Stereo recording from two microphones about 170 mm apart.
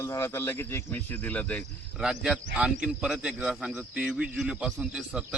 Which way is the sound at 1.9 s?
5° right (ahead or behind).